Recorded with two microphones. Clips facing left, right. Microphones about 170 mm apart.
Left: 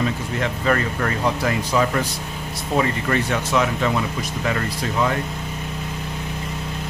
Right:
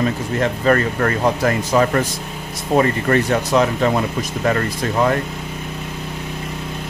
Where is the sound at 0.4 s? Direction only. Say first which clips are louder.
Right 5 dB; 45° right (ahead or behind).